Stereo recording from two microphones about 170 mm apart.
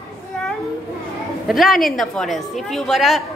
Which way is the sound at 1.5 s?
Centre (ahead or behind).